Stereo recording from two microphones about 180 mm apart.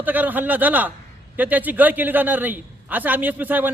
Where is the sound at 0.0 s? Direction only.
10° right (ahead or behind).